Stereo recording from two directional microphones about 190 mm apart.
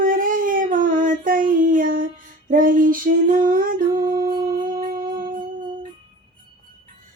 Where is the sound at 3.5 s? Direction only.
50° right (ahead or behind).